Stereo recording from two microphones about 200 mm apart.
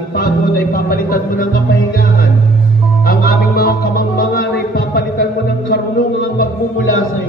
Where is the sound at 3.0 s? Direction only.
50° left (ahead or behind).